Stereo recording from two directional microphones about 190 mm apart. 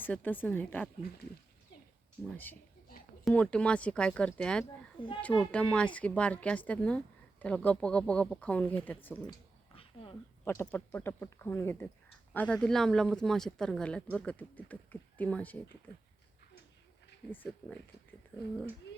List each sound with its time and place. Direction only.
0.0 s speech: 10° left (ahead or behind)
2.3 s speech: 10° left (ahead or behind)
4.9 s speech: 25° left (ahead or behind)
5.5 s speech: 5° left (ahead or behind)
9.7 s a sound: 30° left (ahead or behind)
10.4 s speech: 10° left (ahead or behind)
17.3 s speech: 10° left (ahead or behind)